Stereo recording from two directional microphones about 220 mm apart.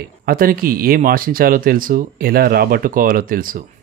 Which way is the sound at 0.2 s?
40° right (ahead or behind).